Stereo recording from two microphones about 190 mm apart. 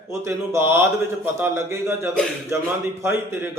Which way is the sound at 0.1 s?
15° right (ahead or behind).